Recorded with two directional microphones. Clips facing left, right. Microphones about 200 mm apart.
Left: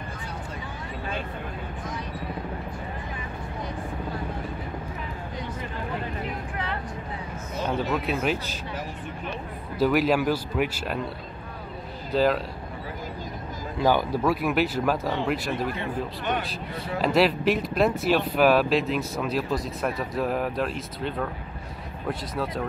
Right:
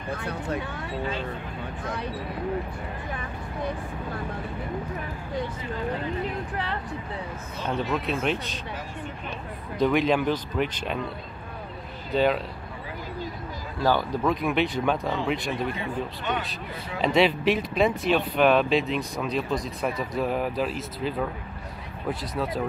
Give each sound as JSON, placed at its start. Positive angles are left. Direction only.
{"t": 0.1, "sound": "speech", "side_deg": -65}
{"t": 6.5, "sound": "speech", "side_deg": -35}
{"t": 7.6, "sound": "speech", "side_deg": 5}
{"t": 9.8, "sound": "speech", "side_deg": 5}
{"t": 12.1, "sound": "speech", "side_deg": 0}
{"t": 13.7, "sound": "speech", "side_deg": 15}